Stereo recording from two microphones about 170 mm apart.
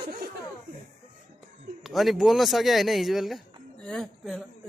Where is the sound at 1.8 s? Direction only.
Centre (ahead or behind).